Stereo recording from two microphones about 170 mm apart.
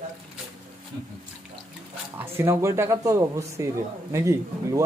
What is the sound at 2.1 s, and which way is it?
A man's voice, 15° right (ahead or behind).